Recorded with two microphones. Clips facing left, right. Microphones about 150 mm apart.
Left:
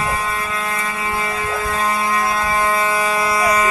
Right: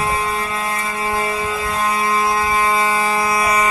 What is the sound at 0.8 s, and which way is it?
Vehicle, 30° right (ahead or behind).